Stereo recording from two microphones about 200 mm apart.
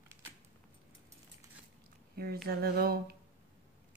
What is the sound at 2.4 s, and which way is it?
Speech, 50° right (ahead or behind).